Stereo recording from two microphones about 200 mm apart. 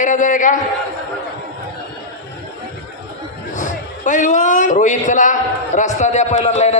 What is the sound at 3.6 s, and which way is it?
A man's voice, 40° left (ahead or behind).